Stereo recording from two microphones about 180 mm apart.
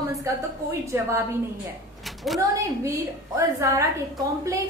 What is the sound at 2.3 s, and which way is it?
Speech, centre (ahead or behind).